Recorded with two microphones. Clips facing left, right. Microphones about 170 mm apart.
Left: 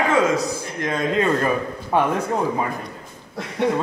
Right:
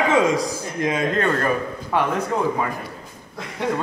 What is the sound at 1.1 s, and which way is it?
Speech, 5° left (ahead or behind).